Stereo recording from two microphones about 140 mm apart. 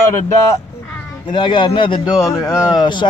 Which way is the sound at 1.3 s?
35° left (ahead or behind).